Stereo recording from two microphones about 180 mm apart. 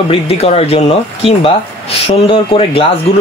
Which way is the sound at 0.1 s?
35° left (ahead or behind).